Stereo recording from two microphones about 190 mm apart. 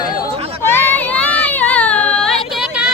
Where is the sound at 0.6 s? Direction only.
10° left (ahead or behind).